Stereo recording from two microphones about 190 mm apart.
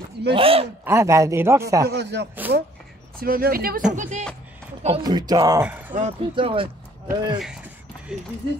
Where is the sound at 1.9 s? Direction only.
60° right (ahead or behind).